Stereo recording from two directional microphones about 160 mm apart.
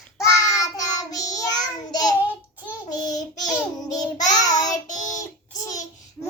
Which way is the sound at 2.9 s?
25° left (ahead or behind).